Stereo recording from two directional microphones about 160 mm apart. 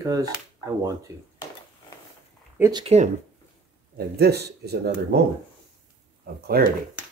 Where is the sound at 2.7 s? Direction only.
40° right (ahead or behind).